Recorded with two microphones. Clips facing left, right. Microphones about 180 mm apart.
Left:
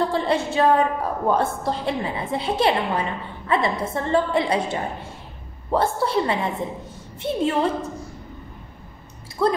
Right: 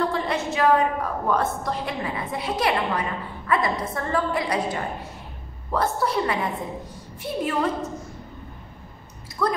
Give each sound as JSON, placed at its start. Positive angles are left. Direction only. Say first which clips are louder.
{"t": 0.1, "sound": "a woman's voice", "louder": "left 4 dB", "side_deg": 30}
{"t": 9.4, "sound": "a woman's voice", "louder": "left 4 dB", "side_deg": 30}